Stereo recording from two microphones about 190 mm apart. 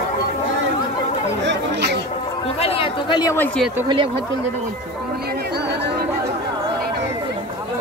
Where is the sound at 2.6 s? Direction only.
30° left (ahead or behind).